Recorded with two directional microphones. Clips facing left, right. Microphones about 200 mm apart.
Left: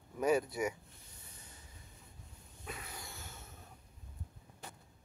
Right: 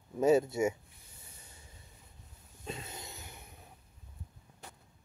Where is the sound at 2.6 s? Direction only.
25° right (ahead or behind).